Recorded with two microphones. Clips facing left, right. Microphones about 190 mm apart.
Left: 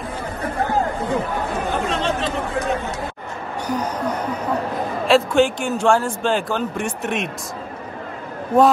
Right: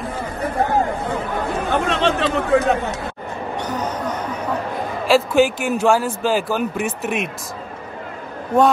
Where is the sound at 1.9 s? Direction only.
75° right (ahead or behind).